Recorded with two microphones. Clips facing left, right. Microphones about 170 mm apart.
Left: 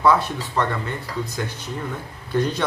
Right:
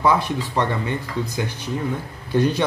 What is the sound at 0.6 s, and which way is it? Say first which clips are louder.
Speech: right 1 dB; 15° right (ahead or behind).